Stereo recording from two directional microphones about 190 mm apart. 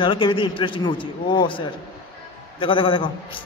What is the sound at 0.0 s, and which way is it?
A man's voice, 25° left (ahead or behind).